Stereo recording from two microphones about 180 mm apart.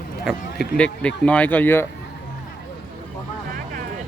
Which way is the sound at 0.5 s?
60° left (ahead or behind).